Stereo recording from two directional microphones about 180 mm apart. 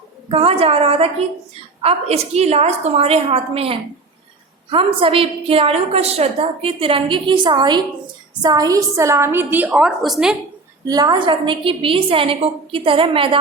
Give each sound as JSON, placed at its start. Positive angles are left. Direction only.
{"t": 0.3, "sound": "a woman's voice", "side_deg": -30}
{"t": 10.8, "sound": "a woman's voice", "side_deg": -20}